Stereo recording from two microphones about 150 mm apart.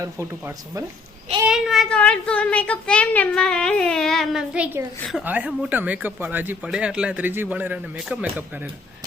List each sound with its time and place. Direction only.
0.0 s speech: 20° right (ahead or behind)
1.5 s speech: centre (ahead or behind)